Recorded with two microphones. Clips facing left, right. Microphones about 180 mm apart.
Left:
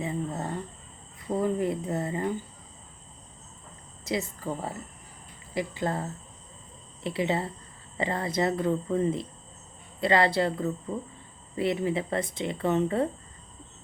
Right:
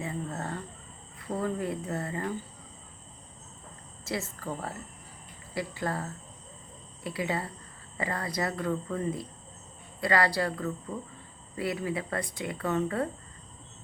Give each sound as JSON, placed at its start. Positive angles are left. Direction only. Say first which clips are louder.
{"t": 0.0, "sound": "a sound", "louder": "left 4 dB", "side_deg": 15}
{"t": 1.3, "sound": "speech", "louder": "left 4 dB", "side_deg": 20}
{"t": 4.0, "sound": "a woman's voice", "louder": "left 4 dB", "side_deg": 15}